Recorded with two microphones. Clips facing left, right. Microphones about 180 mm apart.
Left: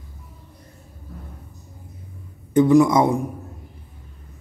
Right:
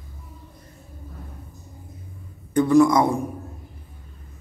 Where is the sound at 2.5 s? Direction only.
20° left (ahead or behind).